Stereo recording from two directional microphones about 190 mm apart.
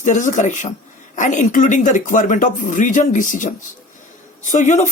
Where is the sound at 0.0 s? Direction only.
40° left (ahead or behind).